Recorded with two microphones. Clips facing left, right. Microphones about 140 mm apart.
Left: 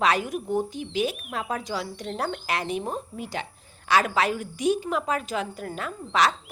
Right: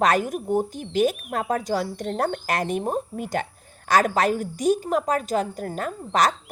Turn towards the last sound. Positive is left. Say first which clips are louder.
# right 2 dB
turn(degrees=-45)  # may be behind; listen again after turning